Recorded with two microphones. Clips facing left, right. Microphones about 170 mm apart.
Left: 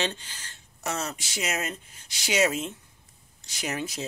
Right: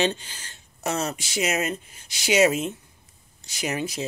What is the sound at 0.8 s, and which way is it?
Speech, 25° right (ahead or behind).